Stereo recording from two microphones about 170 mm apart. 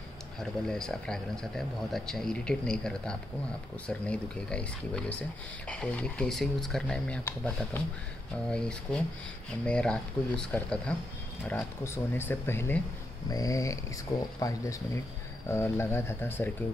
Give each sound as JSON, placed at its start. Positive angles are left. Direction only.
{"t": 0.4, "sound": "speech", "side_deg": 5}
{"t": 13.3, "sound": "a sound", "side_deg": 20}
{"t": 15.5, "sound": "speech", "side_deg": 15}